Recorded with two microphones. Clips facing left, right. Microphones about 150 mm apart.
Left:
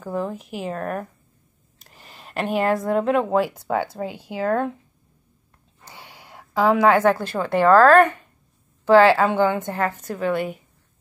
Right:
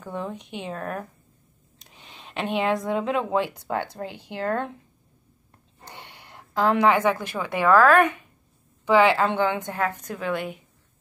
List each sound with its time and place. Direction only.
0.0 s a woman's voice: centre (ahead or behind)
5.9 s a sound: 10° left (ahead or behind)
7.3 s a woman's voice: 50° left (ahead or behind)
9.1 s a woman's voice: 5° left (ahead or behind)